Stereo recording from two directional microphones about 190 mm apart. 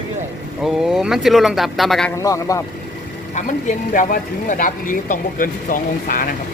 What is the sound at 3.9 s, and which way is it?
Speech, 45° left (ahead or behind).